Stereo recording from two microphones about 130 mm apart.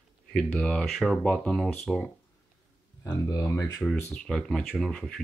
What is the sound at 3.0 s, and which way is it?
Speech, 30° left (ahead or behind).